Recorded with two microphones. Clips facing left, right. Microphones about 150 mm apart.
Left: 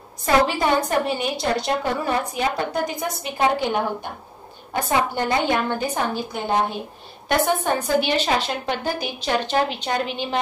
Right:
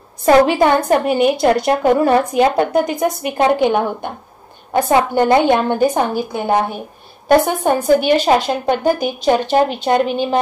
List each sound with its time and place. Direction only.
0.5 s a woman's voice: 60° right (ahead or behind)